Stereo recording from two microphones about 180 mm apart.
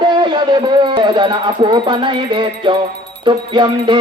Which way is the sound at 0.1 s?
25° right (ahead or behind).